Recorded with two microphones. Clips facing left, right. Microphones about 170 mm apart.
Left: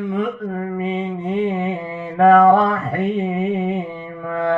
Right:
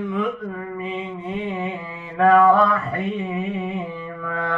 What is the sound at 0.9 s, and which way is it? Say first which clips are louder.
Mantra: left 6 dB; 40° left (ahead or behind).